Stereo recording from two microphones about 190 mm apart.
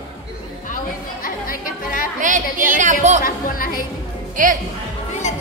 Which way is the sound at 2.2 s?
45° right (ahead or behind).